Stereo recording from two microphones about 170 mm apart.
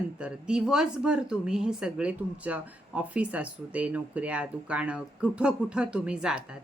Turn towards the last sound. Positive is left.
turn(degrees=-5)  # may be behind; listen again after turning